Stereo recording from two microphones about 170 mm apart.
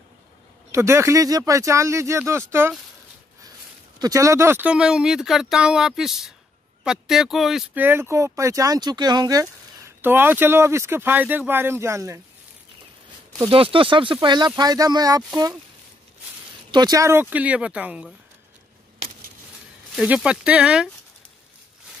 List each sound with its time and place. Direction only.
0.7 s speech: 15° right (ahead or behind)
4.0 s speech: 20° right (ahead or behind)
13.4 s speech: 30° right (ahead or behind)
16.7 s speech: 25° right (ahead or behind); by 18.1 s 5° right (ahead or behind)
20.0 s speech: 5° right (ahead or behind)